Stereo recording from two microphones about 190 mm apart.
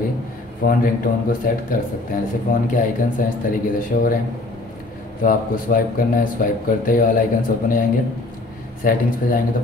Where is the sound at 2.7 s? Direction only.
45° left (ahead or behind).